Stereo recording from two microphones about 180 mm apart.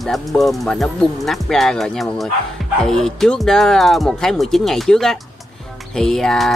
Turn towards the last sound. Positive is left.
turn(degrees=0)  # may be behind; listen again after turning